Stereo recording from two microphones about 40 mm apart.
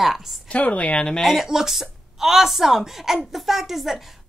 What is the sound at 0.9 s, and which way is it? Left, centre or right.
Speech, centre.